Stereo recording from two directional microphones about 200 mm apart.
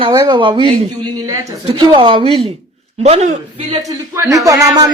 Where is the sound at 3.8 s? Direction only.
15° right (ahead or behind).